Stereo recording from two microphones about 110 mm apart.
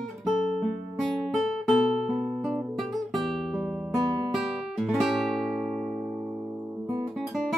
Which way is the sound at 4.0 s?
40° right (ahead or behind).